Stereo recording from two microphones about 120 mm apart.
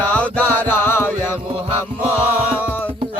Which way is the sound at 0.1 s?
10° left (ahead or behind).